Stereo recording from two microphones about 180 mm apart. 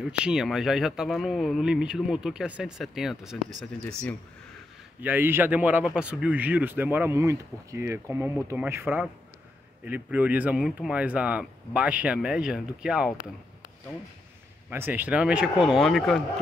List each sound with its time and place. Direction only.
0.2 s speech: 5° right (ahead or behind)
5.0 s speech: 10° right (ahead or behind)
14.7 s speech: 10° right (ahead or behind)